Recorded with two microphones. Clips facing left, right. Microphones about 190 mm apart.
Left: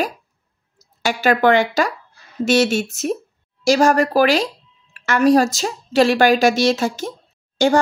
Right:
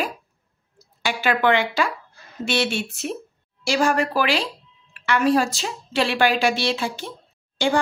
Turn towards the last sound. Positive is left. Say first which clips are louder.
# left 6 dB
turn(degrees=40)  # may be behind; listen again after turning